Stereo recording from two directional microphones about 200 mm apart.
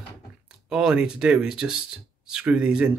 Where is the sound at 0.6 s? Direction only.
5° right (ahead or behind).